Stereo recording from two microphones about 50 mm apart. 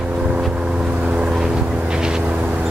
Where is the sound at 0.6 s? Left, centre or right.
Right.